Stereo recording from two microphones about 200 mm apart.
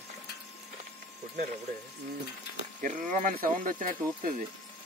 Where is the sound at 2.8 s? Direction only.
40° right (ahead or behind).